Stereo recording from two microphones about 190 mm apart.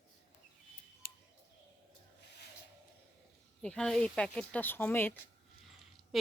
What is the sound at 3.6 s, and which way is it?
Speech, 5° left (ahead or behind).